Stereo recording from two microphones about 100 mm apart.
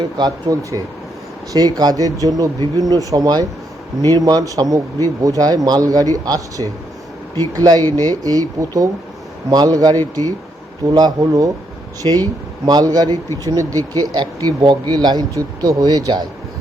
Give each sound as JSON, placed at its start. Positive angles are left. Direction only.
{"t": 0.0, "sound": "speech", "side_deg": -40}
{"t": 14.2, "sound": "speech", "side_deg": -45}